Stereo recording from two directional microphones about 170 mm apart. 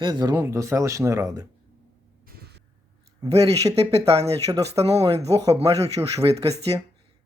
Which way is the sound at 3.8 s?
35° right (ahead or behind).